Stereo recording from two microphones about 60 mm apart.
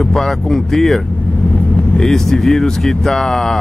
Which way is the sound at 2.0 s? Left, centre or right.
Centre.